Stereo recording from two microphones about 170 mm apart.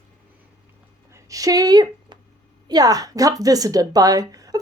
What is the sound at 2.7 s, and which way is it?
Speech, 20° right (ahead or behind).